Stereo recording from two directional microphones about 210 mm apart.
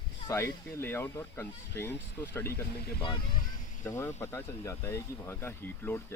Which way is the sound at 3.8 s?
15° left (ahead or behind).